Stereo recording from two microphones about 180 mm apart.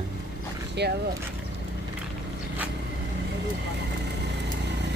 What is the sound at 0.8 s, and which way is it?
Speech, 70° right (ahead or behind).